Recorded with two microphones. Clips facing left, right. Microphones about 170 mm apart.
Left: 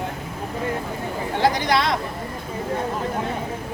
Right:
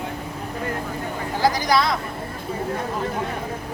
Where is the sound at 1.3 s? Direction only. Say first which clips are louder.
Even; 25° left (ahead or behind).